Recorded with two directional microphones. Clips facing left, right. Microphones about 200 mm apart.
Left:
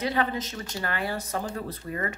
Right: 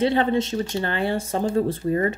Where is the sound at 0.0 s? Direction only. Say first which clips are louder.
Right 8 dB; 30° right (ahead or behind).